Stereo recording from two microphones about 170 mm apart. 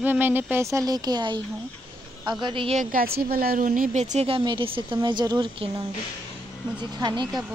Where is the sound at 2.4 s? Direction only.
30° right (ahead or behind).